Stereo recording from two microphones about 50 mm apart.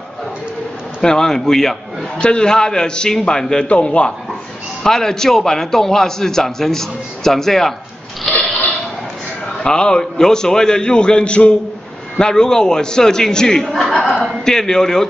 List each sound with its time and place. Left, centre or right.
1.0 s a man's voice: centre
2.1 s a man's voice: centre
4.8 s a man's voice: centre
8.3 s a sound: centre
9.6 s a man's voice: centre
14.0 s chuckle: centre
14.4 s a man's voice: centre